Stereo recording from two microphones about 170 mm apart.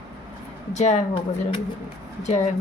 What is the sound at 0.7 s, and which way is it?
Speech, 40° left (ahead or behind).